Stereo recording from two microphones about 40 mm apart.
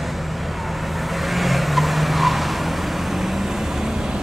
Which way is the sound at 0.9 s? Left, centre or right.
Centre.